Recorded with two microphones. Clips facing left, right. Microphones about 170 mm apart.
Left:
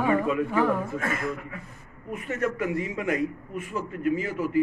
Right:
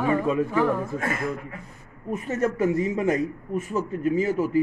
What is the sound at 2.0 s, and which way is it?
Speech, 40° right (ahead or behind).